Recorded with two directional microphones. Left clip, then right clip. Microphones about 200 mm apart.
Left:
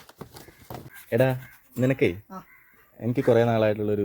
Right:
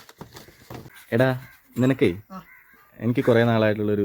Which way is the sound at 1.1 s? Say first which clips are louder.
Right 1 dB; 20° right (ahead or behind).